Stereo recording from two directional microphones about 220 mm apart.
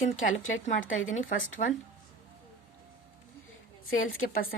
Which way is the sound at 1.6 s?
30° left (ahead or behind).